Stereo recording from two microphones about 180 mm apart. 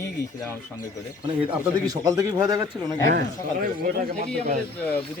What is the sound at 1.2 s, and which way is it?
Speech, 25° right (ahead or behind).